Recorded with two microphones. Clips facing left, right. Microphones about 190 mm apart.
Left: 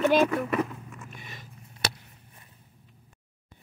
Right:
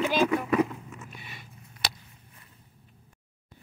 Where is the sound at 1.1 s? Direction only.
45° left (ahead or behind).